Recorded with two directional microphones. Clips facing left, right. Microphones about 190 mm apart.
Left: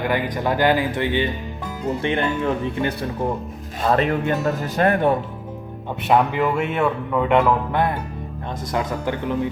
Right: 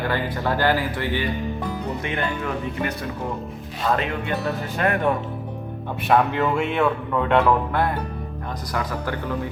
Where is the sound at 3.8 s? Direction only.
40° left (ahead or behind).